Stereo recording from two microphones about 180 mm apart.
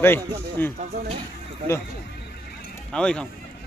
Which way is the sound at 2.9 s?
5° left (ahead or behind).